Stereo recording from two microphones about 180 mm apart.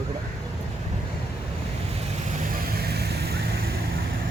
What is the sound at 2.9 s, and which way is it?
Vehicle, 65° right (ahead or behind).